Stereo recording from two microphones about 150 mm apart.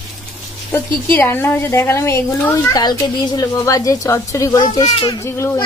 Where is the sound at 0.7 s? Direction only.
15° left (ahead or behind).